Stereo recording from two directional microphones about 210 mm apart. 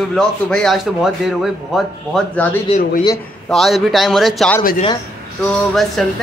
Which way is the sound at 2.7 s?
30° left (ahead or behind).